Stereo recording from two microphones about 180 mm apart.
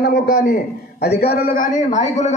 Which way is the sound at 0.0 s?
60° left (ahead or behind).